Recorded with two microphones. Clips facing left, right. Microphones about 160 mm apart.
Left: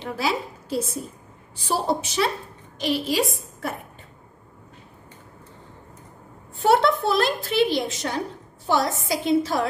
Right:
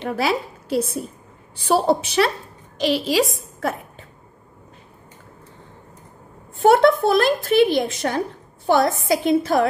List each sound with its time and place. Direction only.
0.0 s a woman's voice: 65° right (ahead or behind)
2.8 s a woman's voice: 90° right
6.6 s a woman's voice: 50° right (ahead or behind)